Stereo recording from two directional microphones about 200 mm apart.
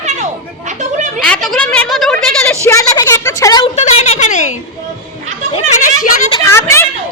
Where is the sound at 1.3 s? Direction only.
5° left (ahead or behind).